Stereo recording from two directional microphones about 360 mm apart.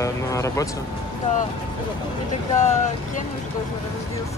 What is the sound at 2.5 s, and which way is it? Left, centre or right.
Speech, centre.